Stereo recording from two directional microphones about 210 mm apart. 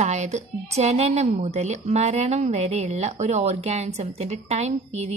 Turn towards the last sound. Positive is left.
turn(degrees=-30)  # may be behind; listen again after turning